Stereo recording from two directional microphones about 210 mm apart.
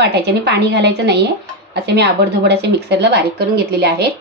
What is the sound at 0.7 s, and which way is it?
A woman's voice, 50° right (ahead or behind).